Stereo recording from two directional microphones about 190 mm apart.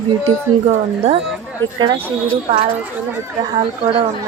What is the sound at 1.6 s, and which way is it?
Speech, 85° right.